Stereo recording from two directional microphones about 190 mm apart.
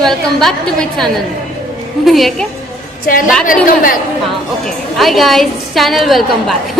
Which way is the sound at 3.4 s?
45° left (ahead or behind).